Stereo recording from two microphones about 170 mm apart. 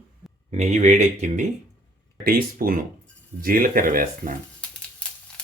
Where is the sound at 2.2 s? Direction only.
60° right (ahead or behind).